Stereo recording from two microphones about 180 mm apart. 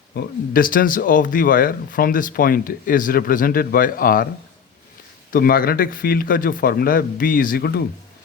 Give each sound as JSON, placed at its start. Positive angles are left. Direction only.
{"t": 0.2, "sound": "speech", "side_deg": 50}
{"t": 5.3, "sound": "speech", "side_deg": 55}